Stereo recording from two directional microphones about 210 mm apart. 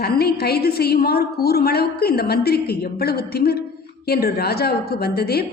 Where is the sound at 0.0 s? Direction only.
50° left (ahead or behind).